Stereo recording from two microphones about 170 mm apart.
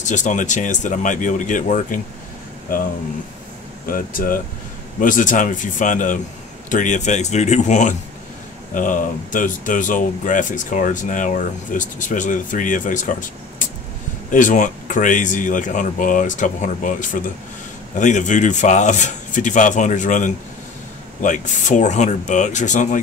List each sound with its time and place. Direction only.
0.0 s speech: 45° left (ahead or behind)
3.8 s speech: 55° left (ahead or behind)